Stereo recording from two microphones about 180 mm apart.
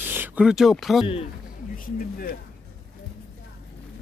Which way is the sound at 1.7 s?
50° left (ahead or behind).